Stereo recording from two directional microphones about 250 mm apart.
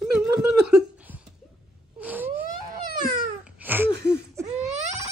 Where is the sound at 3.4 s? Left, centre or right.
Centre.